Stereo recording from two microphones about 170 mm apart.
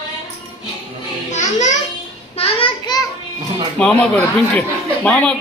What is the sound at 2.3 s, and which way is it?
Child singing, 35° left (ahead or behind).